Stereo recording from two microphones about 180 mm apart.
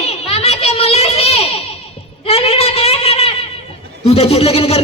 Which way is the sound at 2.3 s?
35° left (ahead or behind).